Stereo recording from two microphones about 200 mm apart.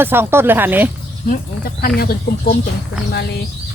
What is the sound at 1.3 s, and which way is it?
Speech, 45° left (ahead or behind).